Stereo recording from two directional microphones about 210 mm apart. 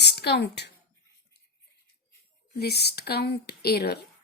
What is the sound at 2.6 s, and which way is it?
A woman's voice, 50° left (ahead or behind).